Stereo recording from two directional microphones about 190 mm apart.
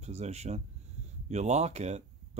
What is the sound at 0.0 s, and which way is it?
Speech, 35° right (ahead or behind).